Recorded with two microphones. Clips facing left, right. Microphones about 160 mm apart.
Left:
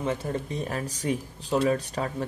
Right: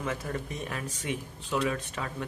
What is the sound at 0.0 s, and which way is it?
A man's voice, 30° left (ahead or behind).